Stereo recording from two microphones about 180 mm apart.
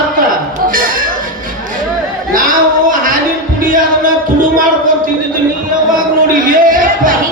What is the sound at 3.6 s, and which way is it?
Music, 50° right (ahead or behind).